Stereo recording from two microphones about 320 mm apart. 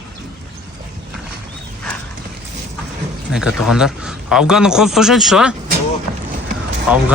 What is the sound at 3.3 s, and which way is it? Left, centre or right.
Speech, centre.